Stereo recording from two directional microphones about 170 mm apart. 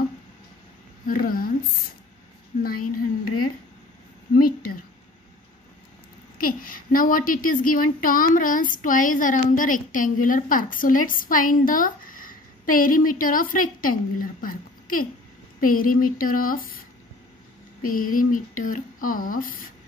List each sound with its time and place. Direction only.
1.0 s speech: 55° left (ahead or behind)
2.6 s speech: 60° left (ahead or behind)
4.4 s speech: 60° left (ahead or behind)
6.4 s a woman's voice: 55° left (ahead or behind)
17.8 s a woman's voice: 55° left (ahead or behind)